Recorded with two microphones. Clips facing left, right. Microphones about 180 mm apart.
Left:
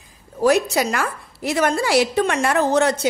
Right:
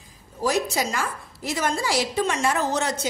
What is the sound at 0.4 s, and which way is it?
A woman's voice, 65° left (ahead or behind).